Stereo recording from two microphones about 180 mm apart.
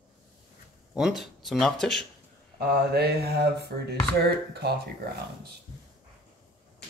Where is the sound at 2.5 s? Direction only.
65° right (ahead or behind).